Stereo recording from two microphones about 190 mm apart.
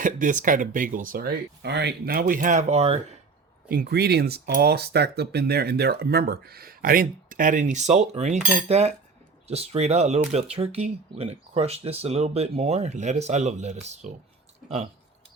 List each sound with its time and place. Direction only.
0.0 s speech: 40° right (ahead or behind)
3.7 s speech: 55° right (ahead or behind); by 14.1 s 35° right (ahead or behind)